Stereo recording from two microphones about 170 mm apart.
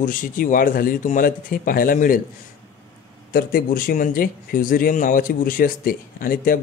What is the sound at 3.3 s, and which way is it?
Speech, 60° left (ahead or behind).